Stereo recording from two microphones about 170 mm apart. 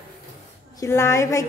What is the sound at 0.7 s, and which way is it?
Speech, 15° left (ahead or behind).